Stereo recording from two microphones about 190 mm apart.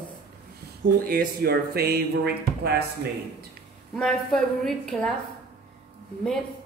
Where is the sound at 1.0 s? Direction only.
50° right (ahead or behind).